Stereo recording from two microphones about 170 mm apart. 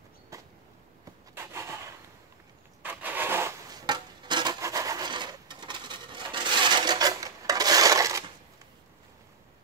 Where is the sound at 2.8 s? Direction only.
10° right (ahead or behind).